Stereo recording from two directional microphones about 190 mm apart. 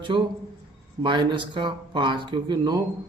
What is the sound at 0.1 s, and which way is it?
Speech, 30° right (ahead or behind).